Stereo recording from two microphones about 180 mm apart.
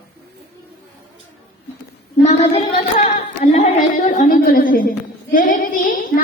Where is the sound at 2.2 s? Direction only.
35° left (ahead or behind).